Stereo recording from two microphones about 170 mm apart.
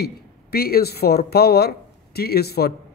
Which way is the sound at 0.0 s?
65° left (ahead or behind).